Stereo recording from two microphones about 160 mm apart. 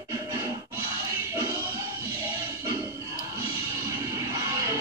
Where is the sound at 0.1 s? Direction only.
20° right (ahead or behind).